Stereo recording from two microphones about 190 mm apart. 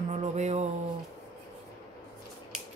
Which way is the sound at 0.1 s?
40° right (ahead or behind).